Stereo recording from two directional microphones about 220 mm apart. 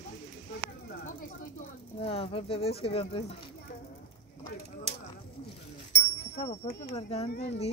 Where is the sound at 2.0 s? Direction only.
25° left (ahead or behind).